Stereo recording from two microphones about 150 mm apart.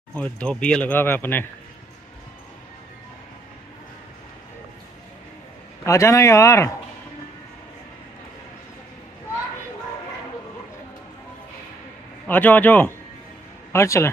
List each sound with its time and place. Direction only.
0.1 s speech: 5° left (ahead or behind)
5.9 s speech: 20° left (ahead or behind)
12.3 s a man's voice: 10° left (ahead or behind)